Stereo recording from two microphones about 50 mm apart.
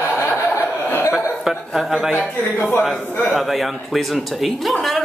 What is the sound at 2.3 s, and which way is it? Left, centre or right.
A man's voice, left.